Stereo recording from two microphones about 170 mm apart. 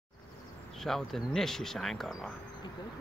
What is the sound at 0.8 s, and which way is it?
Speech, centre (ahead or behind).